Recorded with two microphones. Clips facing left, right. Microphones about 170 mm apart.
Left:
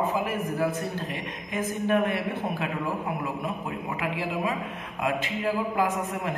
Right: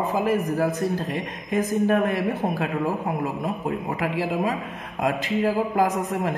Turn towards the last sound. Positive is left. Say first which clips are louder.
# right 4 dB
turn(degrees=-40)  # may be behind; listen again after turning